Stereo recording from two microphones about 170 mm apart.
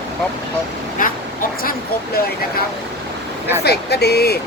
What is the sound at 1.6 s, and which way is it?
Speech, 60° left (ahead or behind).